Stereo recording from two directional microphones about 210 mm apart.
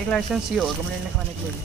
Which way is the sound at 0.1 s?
Centre (ahead or behind).